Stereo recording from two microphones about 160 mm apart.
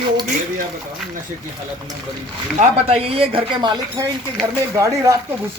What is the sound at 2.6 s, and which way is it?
Speech, 40° right (ahead or behind).